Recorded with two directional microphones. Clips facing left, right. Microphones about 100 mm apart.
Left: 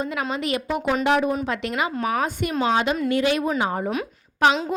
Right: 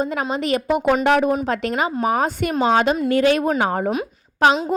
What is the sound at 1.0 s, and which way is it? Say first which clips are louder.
Speech: right 1 dB; 50° right (ahead or behind).